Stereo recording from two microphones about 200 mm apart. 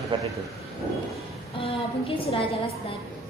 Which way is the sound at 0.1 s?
25° right (ahead or behind).